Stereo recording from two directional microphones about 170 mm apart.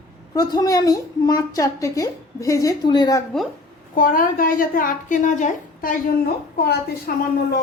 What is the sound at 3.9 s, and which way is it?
A woman's voice, 55° left (ahead or behind).